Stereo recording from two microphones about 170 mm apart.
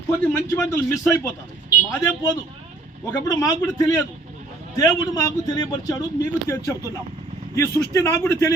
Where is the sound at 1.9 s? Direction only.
10° left (ahead or behind).